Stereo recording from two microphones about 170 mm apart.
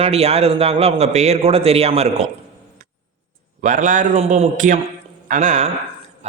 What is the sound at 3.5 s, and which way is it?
A man's voice, 50° right (ahead or behind).